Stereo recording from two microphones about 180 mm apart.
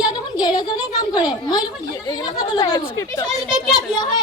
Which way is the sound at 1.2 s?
20° left (ahead or behind).